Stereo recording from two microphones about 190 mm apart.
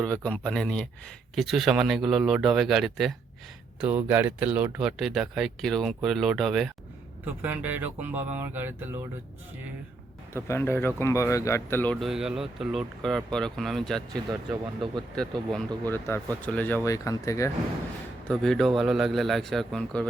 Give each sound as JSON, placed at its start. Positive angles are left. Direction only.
{"t": 0.0, "sound": "speech", "side_deg": 5}
{"t": 10.3, "sound": "speech", "side_deg": 15}
{"t": 14.3, "sound": "speech", "side_deg": -25}
{"t": 15.9, "sound": "speech", "side_deg": 10}
{"t": 18.3, "sound": "speech", "side_deg": 5}